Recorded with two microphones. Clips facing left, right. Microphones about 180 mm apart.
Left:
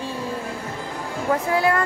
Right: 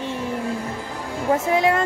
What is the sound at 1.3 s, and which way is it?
Speech, 20° right (ahead or behind).